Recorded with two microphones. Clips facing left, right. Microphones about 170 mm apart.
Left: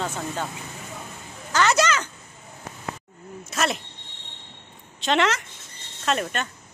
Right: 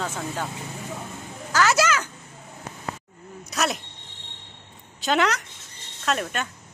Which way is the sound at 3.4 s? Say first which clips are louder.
Even; centre (ahead or behind).